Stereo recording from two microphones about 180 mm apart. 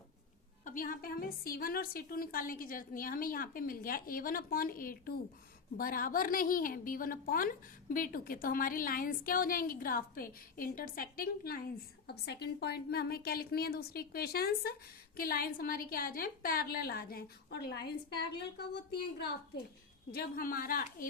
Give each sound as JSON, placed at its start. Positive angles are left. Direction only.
{"t": 0.6, "sound": "a woman's voice", "side_deg": 50}